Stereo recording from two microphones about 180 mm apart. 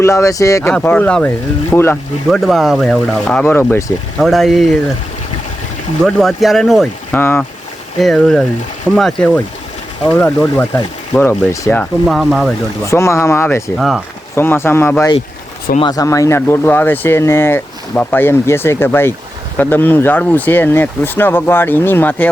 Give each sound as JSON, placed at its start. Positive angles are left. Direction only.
{"t": 0.0, "sound": "speech", "side_deg": 15}
{"t": 4.2, "sound": "speech", "side_deg": 0}
{"t": 6.1, "sound": "speech", "side_deg": 0}
{"t": 7.1, "sound": "speech", "side_deg": 10}
{"t": 7.9, "sound": "speech", "side_deg": 0}
{"t": 12.8, "sound": "speech", "side_deg": 15}
{"t": 13.7, "sound": "speech", "side_deg": 0}
{"t": 14.3, "sound": "speech", "side_deg": 15}